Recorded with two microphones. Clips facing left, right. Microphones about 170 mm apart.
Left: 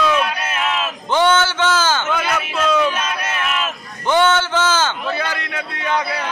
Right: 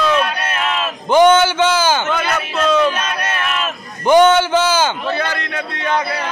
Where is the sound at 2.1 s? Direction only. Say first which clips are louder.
Right 1 dB; 5° left (ahead or behind).